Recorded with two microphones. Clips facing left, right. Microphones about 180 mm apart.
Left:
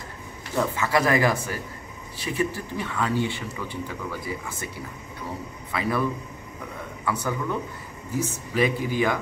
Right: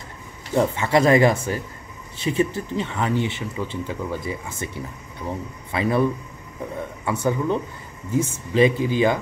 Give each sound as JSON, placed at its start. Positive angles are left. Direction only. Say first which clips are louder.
{"t": 0.6, "sound": "speech", "louder": "right 5 dB", "side_deg": -25}
{"t": 5.7, "sound": "speech", "louder": "right 5 dB", "side_deg": -25}
{"t": 7.1, "sound": "speech", "louder": "right 5 dB", "side_deg": -25}